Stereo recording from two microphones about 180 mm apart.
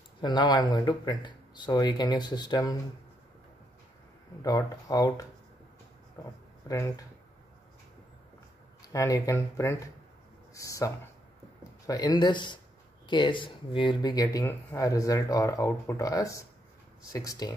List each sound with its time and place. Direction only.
0.2 s speech: 25° left (ahead or behind)
4.4 s speech: 20° left (ahead or behind)
6.7 s speech: 20° left (ahead or behind)
8.9 s speech: 20° left (ahead or behind)